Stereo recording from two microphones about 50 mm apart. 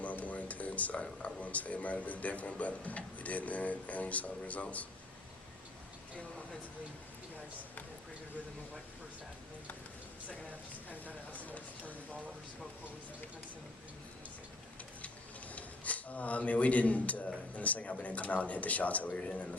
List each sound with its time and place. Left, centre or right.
0.0 s speech: left
10.8 s speech: left
15.5 s a man's voice: left